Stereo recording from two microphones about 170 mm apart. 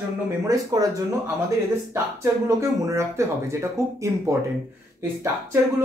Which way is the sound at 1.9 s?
15° right (ahead or behind).